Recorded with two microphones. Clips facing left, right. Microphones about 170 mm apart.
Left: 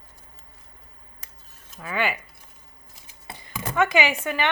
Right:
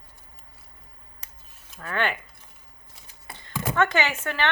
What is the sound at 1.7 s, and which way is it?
Speech, centre (ahead or behind).